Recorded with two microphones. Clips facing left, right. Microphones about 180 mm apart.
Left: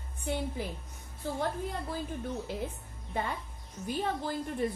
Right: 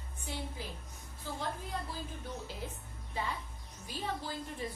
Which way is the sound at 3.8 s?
55° left (ahead or behind).